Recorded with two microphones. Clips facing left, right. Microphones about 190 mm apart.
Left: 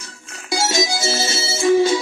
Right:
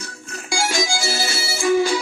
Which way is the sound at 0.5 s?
20° left (ahead or behind).